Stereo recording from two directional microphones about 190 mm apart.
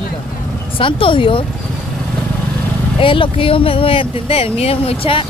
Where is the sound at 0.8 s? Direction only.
25° left (ahead or behind).